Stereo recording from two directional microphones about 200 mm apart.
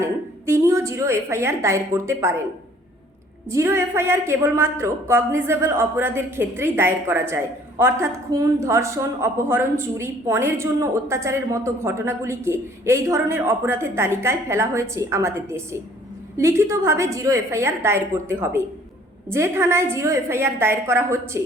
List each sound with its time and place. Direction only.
0.0 s a woman's voice: 15° right (ahead or behind)
3.5 s a woman's voice: 15° right (ahead or behind)